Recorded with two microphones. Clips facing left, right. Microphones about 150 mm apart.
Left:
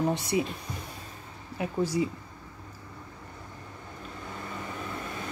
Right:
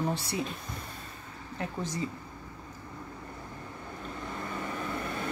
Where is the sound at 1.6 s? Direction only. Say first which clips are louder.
Left 7 dB; 10° left (ahead or behind).